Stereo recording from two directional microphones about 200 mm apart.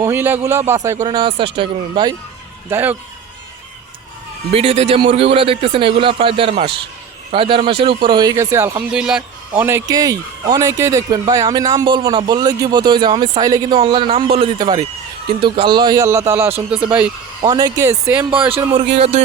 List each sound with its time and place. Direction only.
0.0 s a man's voice: 10° right (ahead or behind)
1.0 s speech: 25° right (ahead or behind)
2.6 s a man's voice: 10° right (ahead or behind)
4.5 s a man's voice: 30° right (ahead or behind); by 17.1 s 5° right (ahead or behind)
17.4 s a man's voice: 20° right (ahead or behind)
18.9 s speech: 30° right (ahead or behind)